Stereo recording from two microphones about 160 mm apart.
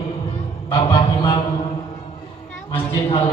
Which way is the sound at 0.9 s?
35° left (ahead or behind).